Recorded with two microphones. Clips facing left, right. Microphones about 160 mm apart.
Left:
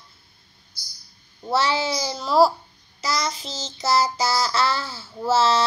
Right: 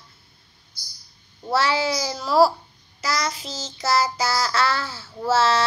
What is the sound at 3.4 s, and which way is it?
A child's voice, 25° left (ahead or behind).